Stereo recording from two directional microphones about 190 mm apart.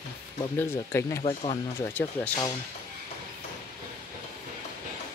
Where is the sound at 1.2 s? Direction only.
35° left (ahead or behind).